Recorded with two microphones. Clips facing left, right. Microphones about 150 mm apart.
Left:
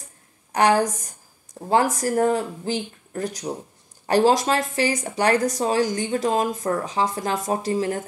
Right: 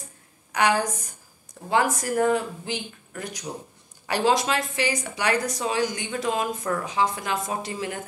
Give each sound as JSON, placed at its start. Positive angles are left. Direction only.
{"t": 0.5, "sound": "a woman's voice", "side_deg": 40}